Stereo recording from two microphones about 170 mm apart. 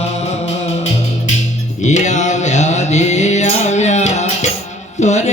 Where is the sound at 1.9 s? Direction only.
45° left (ahead or behind).